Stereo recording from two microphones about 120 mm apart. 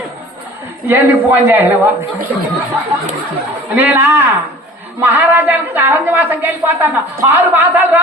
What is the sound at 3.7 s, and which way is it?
A woman's voice, 15° right (ahead or behind).